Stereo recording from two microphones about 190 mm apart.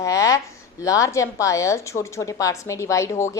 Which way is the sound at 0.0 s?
15° left (ahead or behind).